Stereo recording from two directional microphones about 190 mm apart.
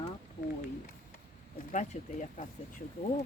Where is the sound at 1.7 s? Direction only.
40° left (ahead or behind).